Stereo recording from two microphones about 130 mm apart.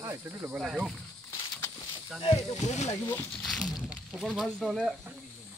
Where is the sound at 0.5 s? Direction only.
5° right (ahead or behind).